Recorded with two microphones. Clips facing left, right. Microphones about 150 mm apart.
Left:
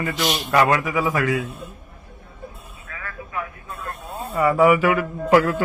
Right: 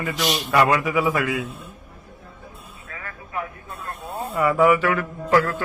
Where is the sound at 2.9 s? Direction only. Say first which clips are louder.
Left 1 dB; 30° right (ahead or behind).